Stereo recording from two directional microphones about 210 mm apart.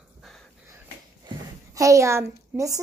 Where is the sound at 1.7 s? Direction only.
15° right (ahead or behind).